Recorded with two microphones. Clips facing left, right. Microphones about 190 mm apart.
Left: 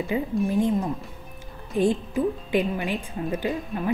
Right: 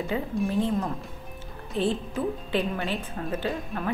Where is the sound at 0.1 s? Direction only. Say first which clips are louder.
Left 3 dB; 10° left (ahead or behind).